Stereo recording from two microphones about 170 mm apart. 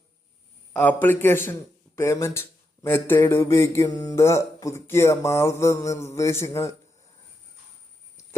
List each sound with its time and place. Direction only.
0.7 s a man's voice: 10° left (ahead or behind)